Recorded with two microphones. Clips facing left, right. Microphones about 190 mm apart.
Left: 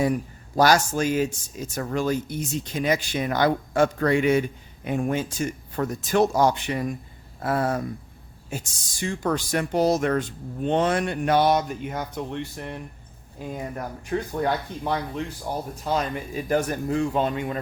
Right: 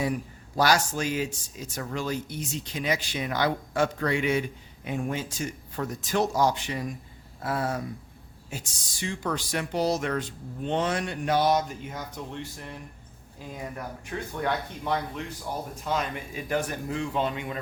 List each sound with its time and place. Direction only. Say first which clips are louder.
0.0 s speech: left 5 dB; 45° left (ahead or behind); by 12.8 s 65° left (ahead or behind)
13.5 s speech: left 4 dB; 40° left (ahead or behind)